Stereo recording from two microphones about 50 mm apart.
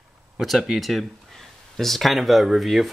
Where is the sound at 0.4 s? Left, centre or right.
Centre.